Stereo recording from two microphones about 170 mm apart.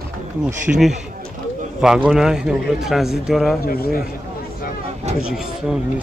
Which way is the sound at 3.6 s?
60° left (ahead or behind).